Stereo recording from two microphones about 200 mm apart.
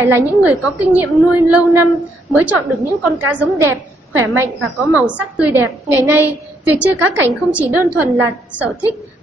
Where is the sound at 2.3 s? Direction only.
5° right (ahead or behind).